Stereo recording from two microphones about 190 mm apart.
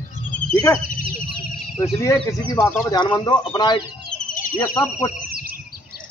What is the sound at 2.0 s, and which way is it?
Speech, 15° left (ahead or behind).